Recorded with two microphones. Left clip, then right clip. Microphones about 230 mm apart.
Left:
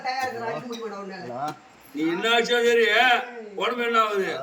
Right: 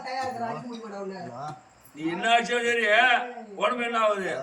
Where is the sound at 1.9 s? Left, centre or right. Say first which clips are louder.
Left 1 dB; centre.